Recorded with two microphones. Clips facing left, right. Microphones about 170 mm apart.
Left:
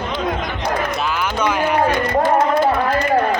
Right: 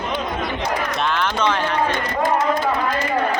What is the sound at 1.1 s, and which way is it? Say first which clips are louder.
Speech: left 1 dB; 10° left (ahead or behind).